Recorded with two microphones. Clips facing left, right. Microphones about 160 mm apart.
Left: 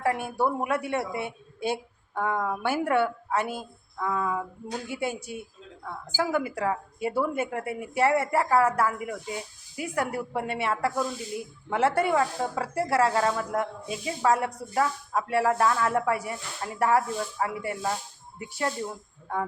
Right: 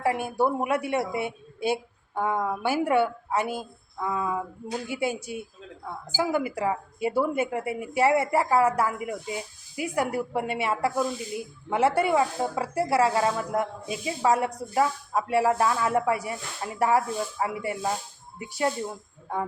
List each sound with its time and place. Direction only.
0.0 s a woman's voice: 15° right (ahead or behind)